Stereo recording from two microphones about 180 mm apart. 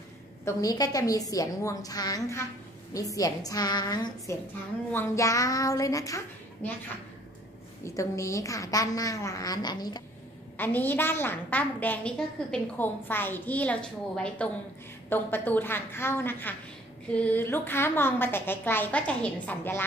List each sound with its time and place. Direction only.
0.5 s a woman's voice: 20° left (ahead or behind)
7.8 s a woman's voice: 15° left (ahead or behind)
10.6 s a woman's voice: 10° left (ahead or behind)